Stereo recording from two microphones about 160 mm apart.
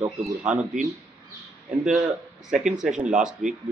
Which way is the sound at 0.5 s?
50° right (ahead or behind).